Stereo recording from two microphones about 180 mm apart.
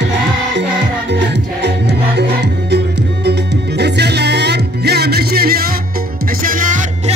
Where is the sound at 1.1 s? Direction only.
70° right (ahead or behind).